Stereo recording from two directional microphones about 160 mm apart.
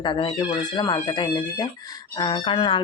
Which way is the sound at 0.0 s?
30° left (ahead or behind).